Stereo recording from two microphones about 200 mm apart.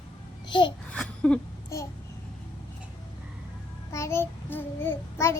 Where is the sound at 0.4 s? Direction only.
25° left (ahead or behind).